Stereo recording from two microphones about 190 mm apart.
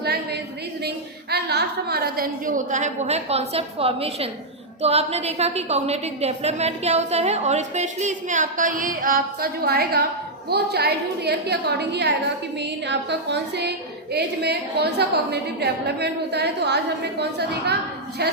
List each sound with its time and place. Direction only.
1.3 s a woman's voice: 60° right (ahead or behind)